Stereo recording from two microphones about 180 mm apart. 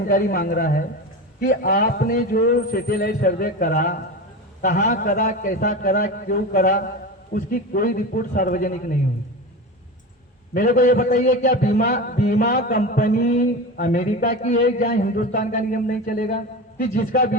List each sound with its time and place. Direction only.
0.0 s a man's voice: 50° left (ahead or behind)
10.5 s a man's voice: 50° left (ahead or behind)